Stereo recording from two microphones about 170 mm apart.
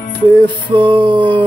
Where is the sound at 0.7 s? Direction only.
30° right (ahead or behind).